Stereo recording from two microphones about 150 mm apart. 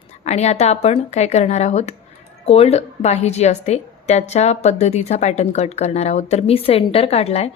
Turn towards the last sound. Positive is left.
turn(degrees=45)  # may be behind; listen again after turning